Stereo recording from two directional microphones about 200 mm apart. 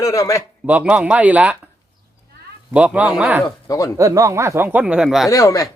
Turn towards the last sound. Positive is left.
turn(degrees=15)  # may be behind; listen again after turning